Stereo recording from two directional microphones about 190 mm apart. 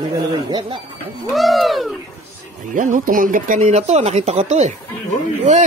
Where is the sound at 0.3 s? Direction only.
20° right (ahead or behind).